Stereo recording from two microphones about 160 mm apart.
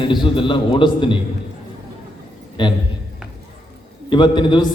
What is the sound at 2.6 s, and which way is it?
Speech, 30° left (ahead or behind).